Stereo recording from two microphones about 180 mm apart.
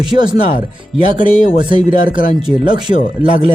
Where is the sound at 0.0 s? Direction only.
25° right (ahead or behind).